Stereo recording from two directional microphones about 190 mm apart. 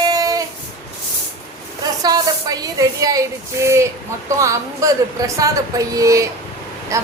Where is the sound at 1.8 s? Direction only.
20° right (ahead or behind).